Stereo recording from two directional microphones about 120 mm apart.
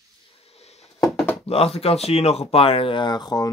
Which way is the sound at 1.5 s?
55° left (ahead or behind).